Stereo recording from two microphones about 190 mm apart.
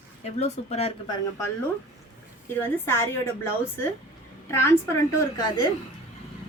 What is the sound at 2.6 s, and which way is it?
A woman's voice, 10° left (ahead or behind).